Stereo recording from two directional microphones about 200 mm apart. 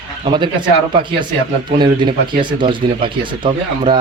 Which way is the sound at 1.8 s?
25° right (ahead or behind).